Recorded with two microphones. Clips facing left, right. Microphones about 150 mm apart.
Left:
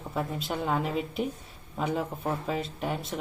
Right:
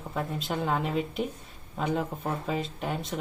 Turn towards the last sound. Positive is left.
turn(degrees=0)  # may be behind; listen again after turning